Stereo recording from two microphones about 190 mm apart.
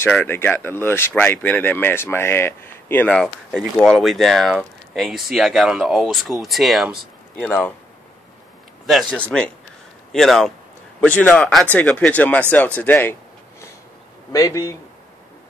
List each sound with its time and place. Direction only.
0.0 s speech: 10° left (ahead or behind)
8.8 s speech: centre (ahead or behind)
14.3 s speech: 15° left (ahead or behind)